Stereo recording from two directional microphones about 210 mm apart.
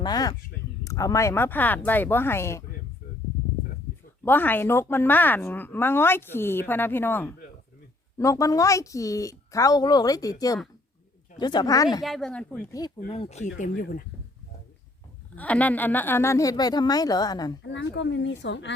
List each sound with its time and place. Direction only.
0.0 s speech: 20° left (ahead or behind)
4.2 s speech: 10° left (ahead or behind)
12.0 s speech: centre (ahead or behind)
13.1 s speech: 30° left (ahead or behind)
15.4 s speech: 5° left (ahead or behind)
17.6 s a woman's voice: 55° left (ahead or behind)